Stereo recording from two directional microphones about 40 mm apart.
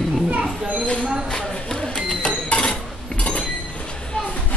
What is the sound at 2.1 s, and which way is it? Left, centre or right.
Chink, left.